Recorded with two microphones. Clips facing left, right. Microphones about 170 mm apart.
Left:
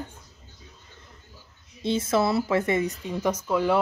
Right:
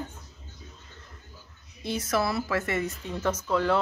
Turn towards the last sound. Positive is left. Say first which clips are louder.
# left 2 dB
turn(degrees=15)  # may be behind; listen again after turning